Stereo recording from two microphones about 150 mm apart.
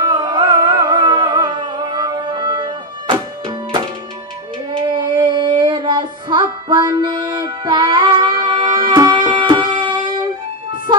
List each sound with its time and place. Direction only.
0.0 s music: 30° right (ahead or behind)
4.7 s child singing: 30° right (ahead or behind)